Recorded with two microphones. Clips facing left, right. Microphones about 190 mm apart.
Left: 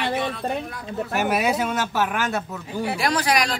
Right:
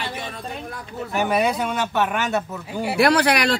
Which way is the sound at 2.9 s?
65° right (ahead or behind).